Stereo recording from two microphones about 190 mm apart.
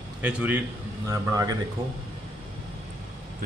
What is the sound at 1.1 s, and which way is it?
Speech, 20° right (ahead or behind).